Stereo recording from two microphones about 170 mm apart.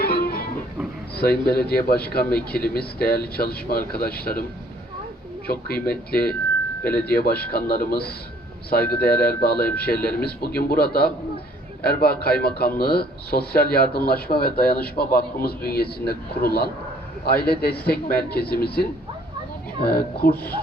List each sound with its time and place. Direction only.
0.0 s music: 65° left (ahead or behind)
1.1 s speech: 65° left (ahead or behind)
5.5 s speech: 65° left (ahead or behind)
9.2 s speech: 65° left (ahead or behind)